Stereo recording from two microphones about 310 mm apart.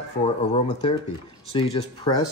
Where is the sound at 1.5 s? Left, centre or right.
Centre.